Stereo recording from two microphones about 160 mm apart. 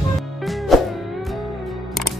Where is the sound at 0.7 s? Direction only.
Centre (ahead or behind).